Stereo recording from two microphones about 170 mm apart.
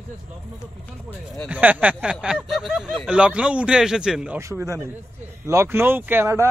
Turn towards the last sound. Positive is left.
turn(degrees=-15)  # may be behind; listen again after turning